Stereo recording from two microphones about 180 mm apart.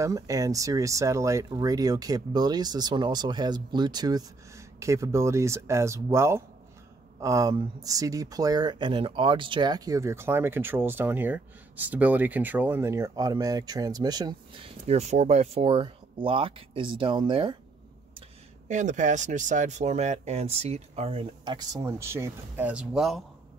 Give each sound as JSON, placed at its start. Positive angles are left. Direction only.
{"t": 0.0, "sound": "speech", "side_deg": -20}
{"t": 18.7, "sound": "speech", "side_deg": -40}